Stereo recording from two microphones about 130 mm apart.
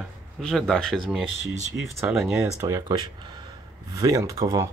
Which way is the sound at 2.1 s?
5° right (ahead or behind).